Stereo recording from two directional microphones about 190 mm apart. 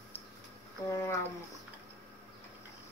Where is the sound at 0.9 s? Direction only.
15° left (ahead or behind).